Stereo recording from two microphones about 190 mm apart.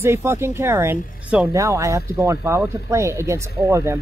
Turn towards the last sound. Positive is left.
turn(degrees=-15)  # may be behind; listen again after turning